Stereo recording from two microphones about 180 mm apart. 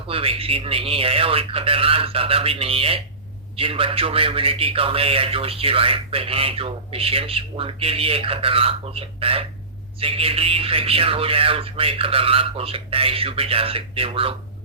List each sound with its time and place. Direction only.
0.1 s a man's voice: 30° right (ahead or behind)